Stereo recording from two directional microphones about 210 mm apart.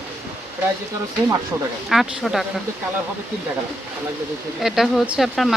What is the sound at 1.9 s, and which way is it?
Speech, centre (ahead or behind).